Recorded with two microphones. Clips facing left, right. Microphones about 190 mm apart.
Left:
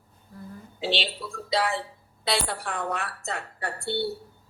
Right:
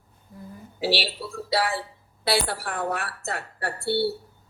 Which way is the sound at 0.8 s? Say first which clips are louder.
Right 3 dB; 5° right (ahead or behind).